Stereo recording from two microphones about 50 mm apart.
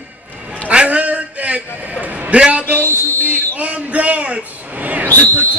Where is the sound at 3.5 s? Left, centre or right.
Right.